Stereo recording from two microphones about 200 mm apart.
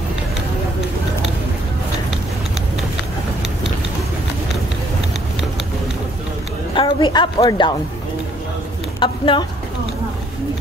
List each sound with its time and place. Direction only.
6.7 s a woman's voice: 25° left (ahead or behind)
9.0 s a woman's voice: 25° left (ahead or behind)